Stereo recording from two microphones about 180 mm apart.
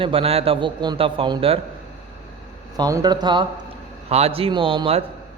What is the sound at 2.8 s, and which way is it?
A man's voice, 20° right (ahead or behind).